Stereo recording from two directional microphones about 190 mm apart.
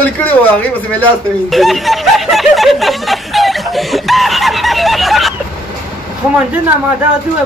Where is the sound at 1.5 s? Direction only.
Centre (ahead or behind).